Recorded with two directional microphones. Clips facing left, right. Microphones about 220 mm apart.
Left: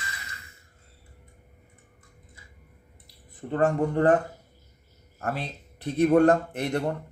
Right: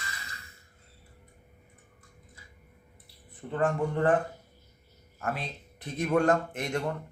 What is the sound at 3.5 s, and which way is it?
Speech, 40° left (ahead or behind).